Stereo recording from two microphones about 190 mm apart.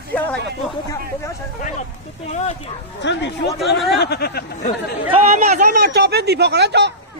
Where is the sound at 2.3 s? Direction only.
35° left (ahead or behind).